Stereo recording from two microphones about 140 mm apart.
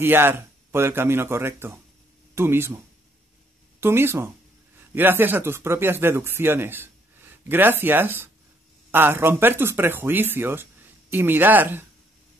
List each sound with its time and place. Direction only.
0.0 s speech: 15° right (ahead or behind)
3.8 s speech: 15° right (ahead or behind)